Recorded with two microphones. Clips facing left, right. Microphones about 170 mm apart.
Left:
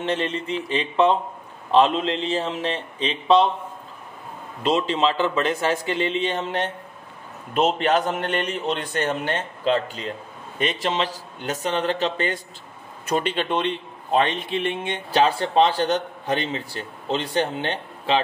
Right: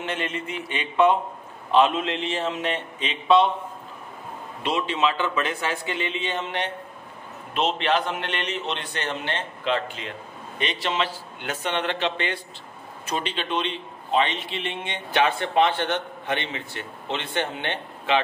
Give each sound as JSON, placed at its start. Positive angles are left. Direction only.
{"t": 0.0, "sound": "a man's voice", "side_deg": 30}
{"t": 4.6, "sound": "a man's voice", "side_deg": 35}
{"t": 15.0, "sound": "a man's voice", "side_deg": 35}